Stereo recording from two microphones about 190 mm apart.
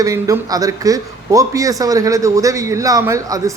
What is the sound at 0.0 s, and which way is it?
A man's voice, 15° right (ahead or behind).